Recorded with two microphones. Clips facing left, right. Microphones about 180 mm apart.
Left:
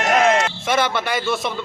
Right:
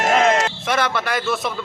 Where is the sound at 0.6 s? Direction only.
Centre (ahead or behind).